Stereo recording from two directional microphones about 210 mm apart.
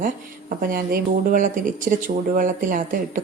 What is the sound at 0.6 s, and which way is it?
A woman's voice, 45° right (ahead or behind).